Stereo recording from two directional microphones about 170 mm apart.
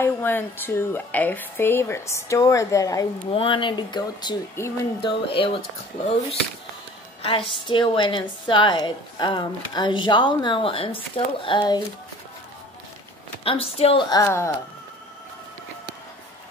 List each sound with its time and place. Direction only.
0.0 s speech: 10° left (ahead or behind)
3.3 s a woman's voice: 30° left (ahead or behind)
5.0 s speech: 30° left (ahead or behind)
7.2 s a woman's voice: 30° left (ahead or behind)
13.4 s a woman's voice: 35° left (ahead or behind); by 14.5 s 15° left (ahead or behind)